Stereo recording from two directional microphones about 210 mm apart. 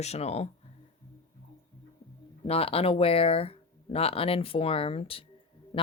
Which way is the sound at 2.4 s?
30° left (ahead or behind).